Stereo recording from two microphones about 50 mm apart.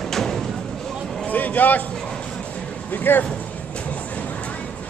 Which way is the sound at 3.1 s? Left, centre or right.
Left.